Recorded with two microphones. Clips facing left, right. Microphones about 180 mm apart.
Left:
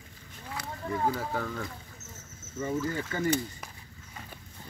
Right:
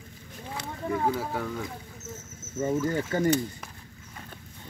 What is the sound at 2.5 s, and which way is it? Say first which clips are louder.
Speech: right 4 dB; 45° right (ahead or behind).